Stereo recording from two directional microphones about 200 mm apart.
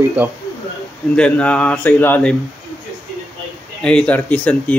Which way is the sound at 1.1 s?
5° left (ahead or behind).